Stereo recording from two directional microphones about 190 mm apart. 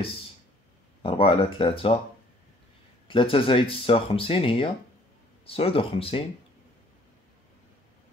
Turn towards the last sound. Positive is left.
turn(degrees=30)  # may be behind; listen again after turning